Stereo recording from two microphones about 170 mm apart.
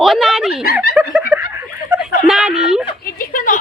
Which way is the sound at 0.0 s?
Centre (ahead or behind).